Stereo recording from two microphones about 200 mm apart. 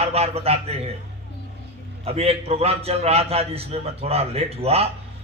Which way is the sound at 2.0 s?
30° right (ahead or behind).